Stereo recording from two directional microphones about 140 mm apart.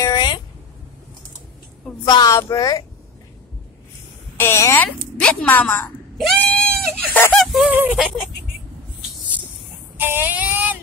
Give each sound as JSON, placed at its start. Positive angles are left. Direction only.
{"t": 0.0, "sound": "a sound", "side_deg": 30}
{"t": 2.0, "sound": "speech", "side_deg": 25}
{"t": 4.4, "sound": "a woman's voice", "side_deg": 20}
{"t": 6.1, "sound": "speech", "side_deg": 0}
{"t": 7.7, "sound": "female singing", "side_deg": -10}
{"t": 9.9, "sound": "female singing", "side_deg": -15}